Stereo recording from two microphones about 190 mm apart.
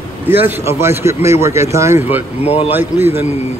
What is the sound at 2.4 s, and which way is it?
Speech, 35° left (ahead or behind).